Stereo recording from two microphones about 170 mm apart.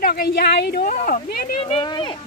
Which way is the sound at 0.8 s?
50° left (ahead or behind).